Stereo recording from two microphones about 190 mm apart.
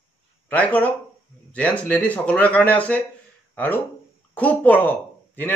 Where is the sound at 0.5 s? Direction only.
10° left (ahead or behind).